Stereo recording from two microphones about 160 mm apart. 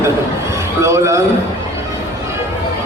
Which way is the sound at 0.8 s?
15° right (ahead or behind).